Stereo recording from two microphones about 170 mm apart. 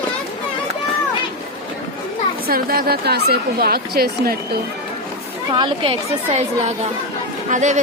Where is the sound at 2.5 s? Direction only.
60° right (ahead or behind).